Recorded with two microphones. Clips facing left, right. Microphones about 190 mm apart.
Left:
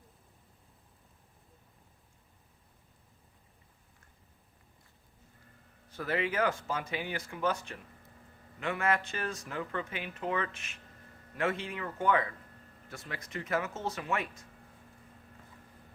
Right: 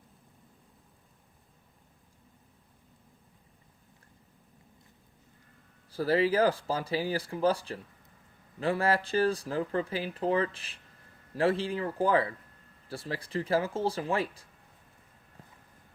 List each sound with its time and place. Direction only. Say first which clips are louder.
5.9 s speech: right 7 dB; 35° right (ahead or behind)